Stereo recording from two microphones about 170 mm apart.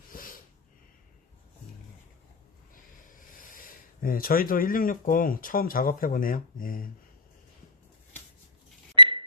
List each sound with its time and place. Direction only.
0.1 s snort: 55° left (ahead or behind)
3.1 s speech: 55° left (ahead or behind)
9.0 s a sound: 30° right (ahead or behind)